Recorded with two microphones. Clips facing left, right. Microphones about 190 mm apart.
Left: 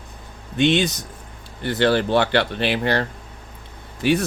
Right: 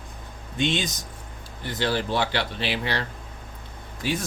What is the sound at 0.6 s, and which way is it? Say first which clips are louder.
Speech: left 8 dB; 65° left (ahead or behind).